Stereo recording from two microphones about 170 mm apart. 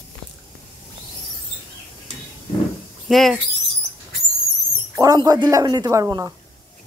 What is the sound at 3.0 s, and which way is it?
Speech, centre (ahead or behind).